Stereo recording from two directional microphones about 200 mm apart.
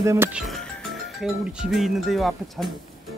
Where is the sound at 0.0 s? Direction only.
15° right (ahead or behind).